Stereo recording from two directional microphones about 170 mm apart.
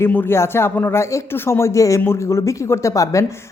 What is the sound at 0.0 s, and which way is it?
A woman's voice, 15° left (ahead or behind).